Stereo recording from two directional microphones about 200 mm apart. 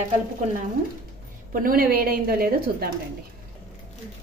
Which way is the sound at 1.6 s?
45° right (ahead or behind).